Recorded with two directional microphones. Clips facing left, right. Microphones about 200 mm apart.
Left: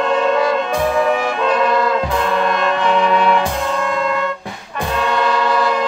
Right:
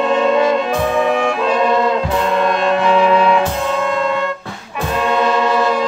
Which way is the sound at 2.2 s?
Centre (ahead or behind).